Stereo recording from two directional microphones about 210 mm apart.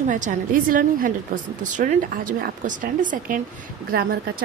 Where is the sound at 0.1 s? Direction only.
40° right (ahead or behind).